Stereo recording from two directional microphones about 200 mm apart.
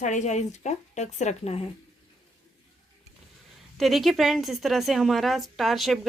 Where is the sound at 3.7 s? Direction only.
Centre (ahead or behind).